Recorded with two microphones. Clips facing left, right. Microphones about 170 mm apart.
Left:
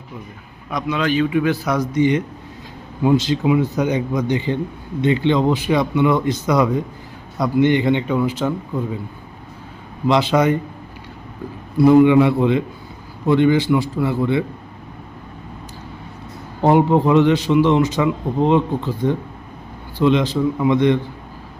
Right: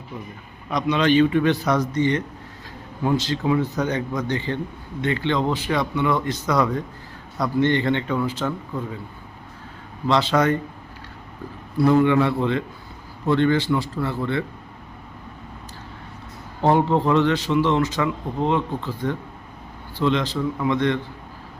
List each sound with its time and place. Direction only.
0.7 s speech: 5° left (ahead or behind)
10.1 s speech: 15° left (ahead or behind)
11.8 s speech: 15° left (ahead or behind)
16.6 s speech: 15° left (ahead or behind)